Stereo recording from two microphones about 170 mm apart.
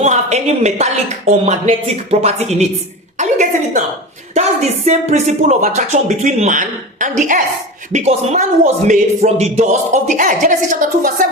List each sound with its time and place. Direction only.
0.0 s speech: 40° right (ahead or behind)
3.2 s a sound: 45° right (ahead or behind)
4.4 s speech: 40° right (ahead or behind)